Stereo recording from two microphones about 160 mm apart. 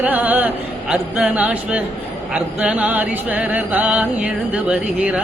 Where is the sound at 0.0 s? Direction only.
10° right (ahead or behind).